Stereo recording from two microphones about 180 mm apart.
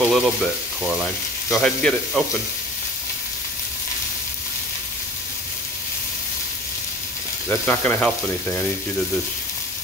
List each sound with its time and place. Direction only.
0.0 s speech: centre (ahead or behind)
1.5 s speech: 5° left (ahead or behind)
7.4 s speech: 10° left (ahead or behind)